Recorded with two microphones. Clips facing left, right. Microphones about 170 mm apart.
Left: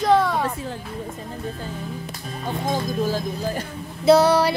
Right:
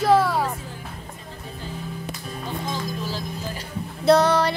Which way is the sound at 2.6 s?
50° left (ahead or behind).